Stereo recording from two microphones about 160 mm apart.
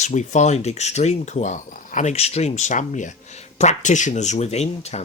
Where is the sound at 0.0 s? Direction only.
50° left (ahead or behind).